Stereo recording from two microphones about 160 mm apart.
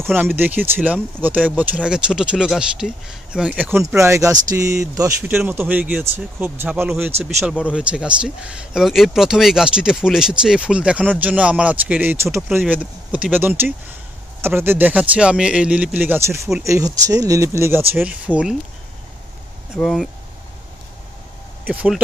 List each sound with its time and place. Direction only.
0.0 s speech: 10° right (ahead or behind)
19.7 s speech: centre (ahead or behind)
21.6 s speech: 10° right (ahead or behind)